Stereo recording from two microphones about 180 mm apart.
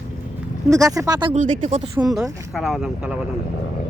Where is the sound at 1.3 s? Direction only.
40° right (ahead or behind).